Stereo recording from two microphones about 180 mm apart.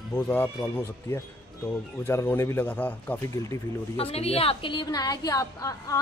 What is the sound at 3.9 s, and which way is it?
A woman's voice, 35° left (ahead or behind).